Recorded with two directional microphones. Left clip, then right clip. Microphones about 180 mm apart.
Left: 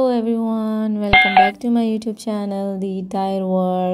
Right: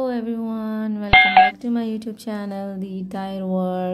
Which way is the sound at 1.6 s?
20° left (ahead or behind).